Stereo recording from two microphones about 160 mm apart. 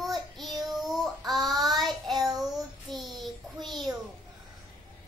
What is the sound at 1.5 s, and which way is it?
Child singing, 25° right (ahead or behind).